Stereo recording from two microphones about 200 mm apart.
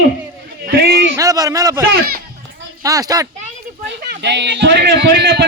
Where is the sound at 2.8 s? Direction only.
15° right (ahead or behind).